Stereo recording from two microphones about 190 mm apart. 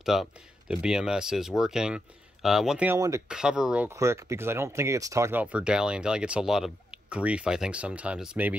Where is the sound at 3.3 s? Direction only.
5° right (ahead or behind).